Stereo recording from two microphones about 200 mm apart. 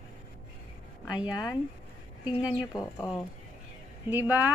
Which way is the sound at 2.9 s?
15° left (ahead or behind).